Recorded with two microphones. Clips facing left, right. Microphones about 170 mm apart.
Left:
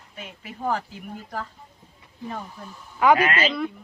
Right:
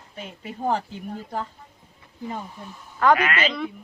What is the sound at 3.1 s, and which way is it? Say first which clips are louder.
Speech: left 2 dB; 30° left (ahead or behind).